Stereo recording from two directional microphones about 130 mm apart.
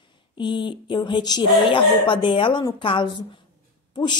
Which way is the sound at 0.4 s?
35° left (ahead or behind).